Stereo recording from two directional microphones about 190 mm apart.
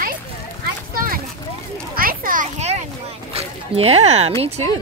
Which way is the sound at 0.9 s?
50° right (ahead or behind).